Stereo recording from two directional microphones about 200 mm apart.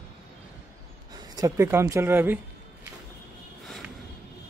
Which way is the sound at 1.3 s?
15° right (ahead or behind).